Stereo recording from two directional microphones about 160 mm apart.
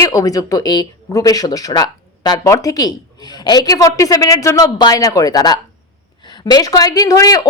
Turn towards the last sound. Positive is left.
turn(degrees=20)  # may be behind; listen again after turning